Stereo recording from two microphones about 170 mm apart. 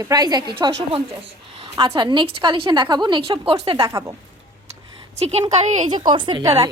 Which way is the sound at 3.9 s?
20° right (ahead or behind).